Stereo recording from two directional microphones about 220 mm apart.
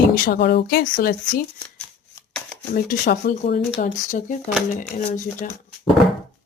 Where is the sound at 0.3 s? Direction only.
50° left (ahead or behind).